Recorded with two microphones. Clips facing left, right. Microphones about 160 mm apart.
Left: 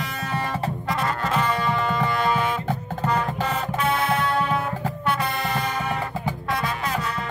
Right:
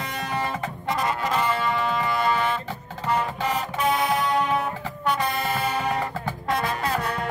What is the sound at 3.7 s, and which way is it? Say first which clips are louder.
Music: even; centre (ahead or behind).